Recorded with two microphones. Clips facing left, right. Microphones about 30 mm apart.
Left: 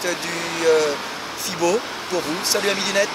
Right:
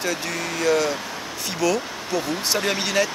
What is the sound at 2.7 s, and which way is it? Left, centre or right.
Speech, centre.